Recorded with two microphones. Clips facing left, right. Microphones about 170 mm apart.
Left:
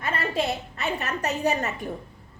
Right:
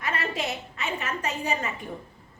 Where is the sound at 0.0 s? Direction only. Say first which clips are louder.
Left 3 dB; 30° left (ahead or behind).